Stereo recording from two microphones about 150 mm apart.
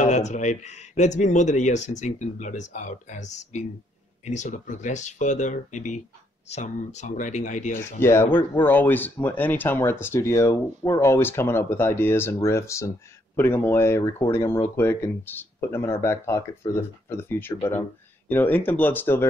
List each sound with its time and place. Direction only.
0.0 s speech: 50° left (ahead or behind)
7.7 s speech: 15° left (ahead or behind)